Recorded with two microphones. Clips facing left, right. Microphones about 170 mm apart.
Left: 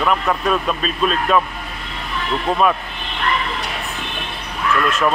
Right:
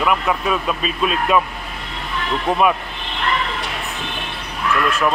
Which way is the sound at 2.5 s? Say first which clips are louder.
Even; 15° right (ahead or behind).